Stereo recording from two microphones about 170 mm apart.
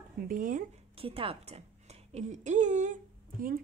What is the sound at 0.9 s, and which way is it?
A woman's voice, 35° right (ahead or behind).